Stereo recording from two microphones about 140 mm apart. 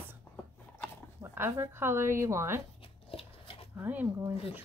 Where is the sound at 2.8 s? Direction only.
40° left (ahead or behind).